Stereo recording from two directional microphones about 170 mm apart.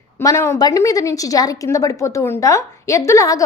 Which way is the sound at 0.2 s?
15° left (ahead or behind).